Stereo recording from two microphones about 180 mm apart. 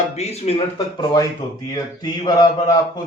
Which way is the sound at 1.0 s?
25° left (ahead or behind).